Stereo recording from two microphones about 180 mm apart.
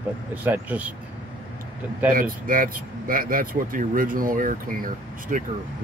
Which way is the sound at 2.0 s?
50° right (ahead or behind).